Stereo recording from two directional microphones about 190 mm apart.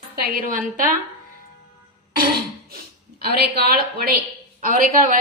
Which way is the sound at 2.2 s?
50° right (ahead or behind).